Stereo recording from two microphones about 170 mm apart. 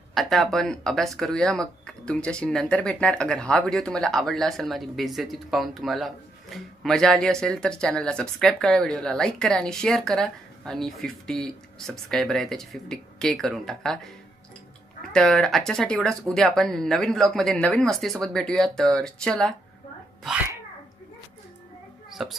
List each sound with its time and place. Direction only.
0.1 s speech: centre (ahead or behind)
15.1 s speech: 5° left (ahead or behind)
22.2 s speech: centre (ahead or behind)